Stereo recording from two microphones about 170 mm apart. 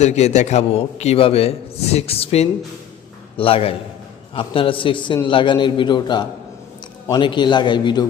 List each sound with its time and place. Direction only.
0.0 s a man's voice: 40° left (ahead or behind)